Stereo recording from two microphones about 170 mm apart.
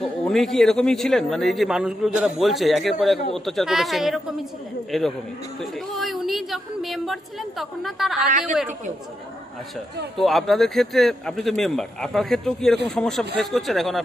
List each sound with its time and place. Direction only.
0.0 s a woman's voice: centre (ahead or behind)
8.3 s a woman's voice: 50° right (ahead or behind)
10.1 s a woman's voice: centre (ahead or behind)